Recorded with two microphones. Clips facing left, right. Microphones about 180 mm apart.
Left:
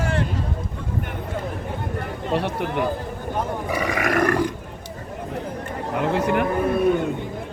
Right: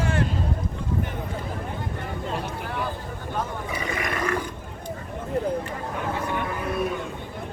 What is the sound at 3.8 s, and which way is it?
Roar, 80° left.